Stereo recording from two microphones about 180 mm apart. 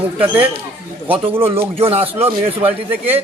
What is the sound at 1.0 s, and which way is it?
A man's voice, 30° right (ahead or behind).